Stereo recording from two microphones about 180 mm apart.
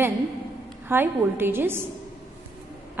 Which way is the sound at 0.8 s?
10° right (ahead or behind).